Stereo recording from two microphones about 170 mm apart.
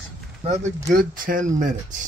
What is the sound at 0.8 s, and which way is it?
Speech, 55° right (ahead or behind).